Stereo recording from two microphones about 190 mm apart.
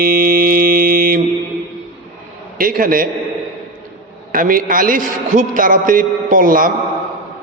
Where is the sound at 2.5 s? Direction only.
50° right (ahead or behind).